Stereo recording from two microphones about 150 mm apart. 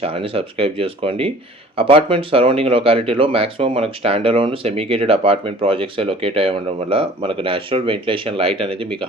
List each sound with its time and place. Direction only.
0.0 s speech: 40° right (ahead or behind)